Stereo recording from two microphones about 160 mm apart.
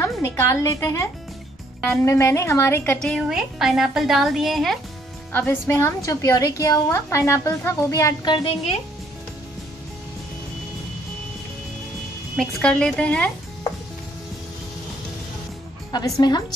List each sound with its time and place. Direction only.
0.0 s a woman's voice: 15° left (ahead or behind); by 4.7 s centre (ahead or behind)
5.3 s a woman's voice: 10° left (ahead or behind)
12.4 s speech: 5° left (ahead or behind)
15.9 s a woman's voice: 25° left (ahead or behind)